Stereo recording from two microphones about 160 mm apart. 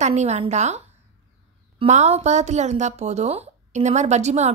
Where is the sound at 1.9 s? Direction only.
45° right (ahead or behind).